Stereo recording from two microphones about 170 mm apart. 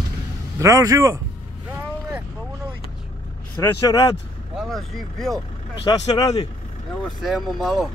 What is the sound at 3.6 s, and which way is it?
Speech, 20° left (ahead or behind).